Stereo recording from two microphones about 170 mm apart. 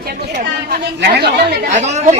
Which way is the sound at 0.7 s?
70° right (ahead or behind).